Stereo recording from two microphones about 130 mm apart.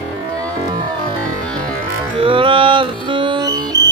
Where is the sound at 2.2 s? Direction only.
40° right (ahead or behind).